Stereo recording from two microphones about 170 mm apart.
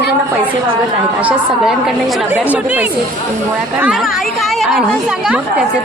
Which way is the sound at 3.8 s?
Centre (ahead or behind).